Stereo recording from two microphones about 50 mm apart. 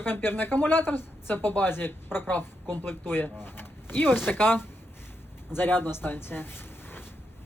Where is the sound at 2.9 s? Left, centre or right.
Left.